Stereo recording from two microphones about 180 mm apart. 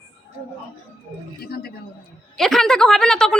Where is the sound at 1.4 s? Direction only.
60° left (ahead or behind).